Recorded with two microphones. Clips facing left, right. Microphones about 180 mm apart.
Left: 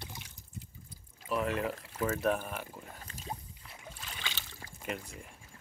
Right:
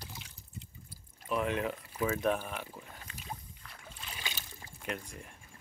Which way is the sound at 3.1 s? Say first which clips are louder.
Left 2 dB; 40° left (ahead or behind).